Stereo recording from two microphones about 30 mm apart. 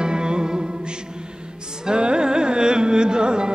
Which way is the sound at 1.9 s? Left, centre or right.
Right.